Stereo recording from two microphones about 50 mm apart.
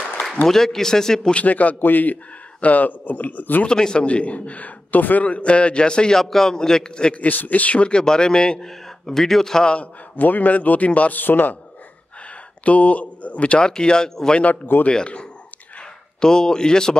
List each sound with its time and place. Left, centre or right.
0.5 s a man's voice: centre
1.3 s a man's voice: left
3.6 s a man's voice: centre
7.2 s a man's voice: left; by 9.7 s centre
10.1 s a man's voice: left
12.6 s a man's voice: left; by 14.4 s centre
14.4 s a man's voice: left
14.9 s a man's voice: left